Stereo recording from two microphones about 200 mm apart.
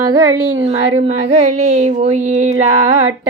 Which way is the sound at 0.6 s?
30° right (ahead or behind).